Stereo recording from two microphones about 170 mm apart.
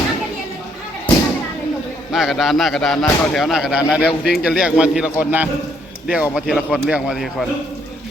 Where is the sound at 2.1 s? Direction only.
Centre (ahead or behind).